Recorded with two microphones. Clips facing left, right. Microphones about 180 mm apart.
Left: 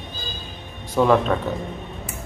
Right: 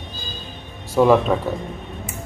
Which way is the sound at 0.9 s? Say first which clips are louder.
Right 3 dB; 5° right (ahead or behind).